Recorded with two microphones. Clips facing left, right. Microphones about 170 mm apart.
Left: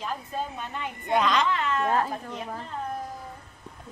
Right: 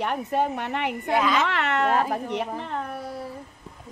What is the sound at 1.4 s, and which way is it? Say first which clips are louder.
A woman's voice: right 2 dB; 75° right (ahead or behind).